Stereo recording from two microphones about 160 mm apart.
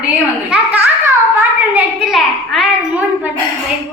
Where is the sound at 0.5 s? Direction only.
10° right (ahead or behind).